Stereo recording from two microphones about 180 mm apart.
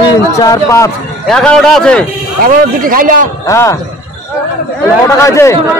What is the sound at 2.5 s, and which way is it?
Speech, 50° right (ahead or behind).